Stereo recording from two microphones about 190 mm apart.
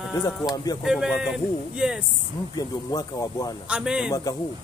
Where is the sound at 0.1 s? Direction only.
20° left (ahead or behind).